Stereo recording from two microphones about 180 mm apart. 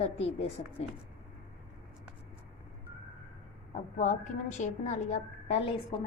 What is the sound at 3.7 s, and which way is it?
A woman's voice, 45° left (ahead or behind).